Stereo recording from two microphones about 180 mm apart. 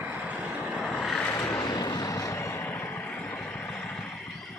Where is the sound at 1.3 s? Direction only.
15° left (ahead or behind).